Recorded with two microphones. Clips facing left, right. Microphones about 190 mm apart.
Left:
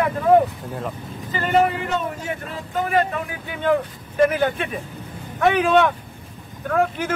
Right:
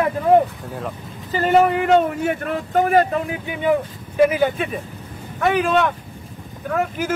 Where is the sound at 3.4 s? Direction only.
10° right (ahead or behind).